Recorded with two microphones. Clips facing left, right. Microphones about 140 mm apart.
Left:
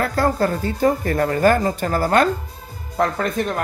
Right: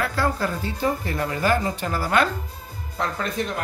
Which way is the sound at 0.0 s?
45° left (ahead or behind).